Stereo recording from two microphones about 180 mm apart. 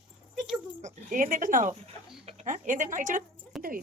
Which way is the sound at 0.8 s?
45° right (ahead or behind).